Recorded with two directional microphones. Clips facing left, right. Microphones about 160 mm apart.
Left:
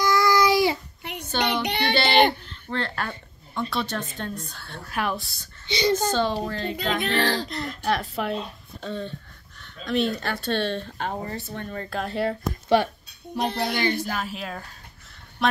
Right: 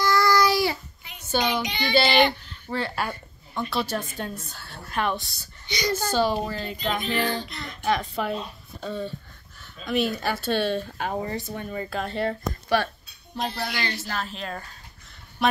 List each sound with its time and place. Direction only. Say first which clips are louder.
0.0 s babbling: left 1 dB; 20° left (ahead or behind)
1.0 s a sound: left 16 dB; 65° left (ahead or behind)
1.4 s child singing: left 4 dB; 60° left (ahead or behind)
2.0 s speech: left 3 dB; 55° left (ahead or behind)
2.7 s a woman's voice: right 1 dB; 5° right (ahead or behind)
5.7 s a child's voice: left 4 dB; 25° left (ahead or behind)
5.9 s speech: even; 10° right (ahead or behind)
7.0 s child singing: left 3 dB; 85° left
7.4 s speech: even; centre (ahead or behind)
12.6 s speech: left 4 dB; 20° left (ahead or behind)
14.0 s speech: left 2 dB; 10° left (ahead or behind)
15.4 s a sound: even; 5° right (ahead or behind)